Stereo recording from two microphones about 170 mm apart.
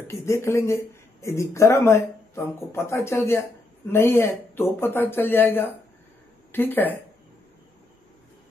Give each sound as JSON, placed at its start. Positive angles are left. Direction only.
{"t": 0.0, "sound": "speech", "side_deg": 15}